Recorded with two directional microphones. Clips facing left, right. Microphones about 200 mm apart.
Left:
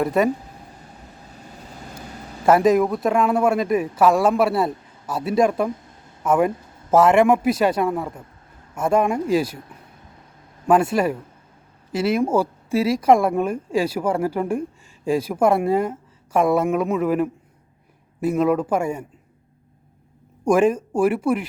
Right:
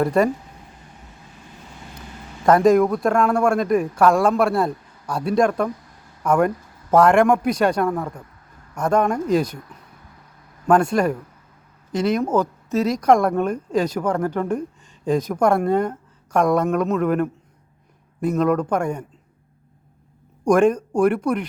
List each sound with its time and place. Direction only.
0.0 s speech: centre (ahead or behind)
2.0 s a man's voice: 5° left (ahead or behind)
5.6 s a sound: 25° left (ahead or behind)
6.2 s speech: 5° left (ahead or behind)
10.7 s speech: 5° left (ahead or behind)
20.5 s speech: 5° left (ahead or behind)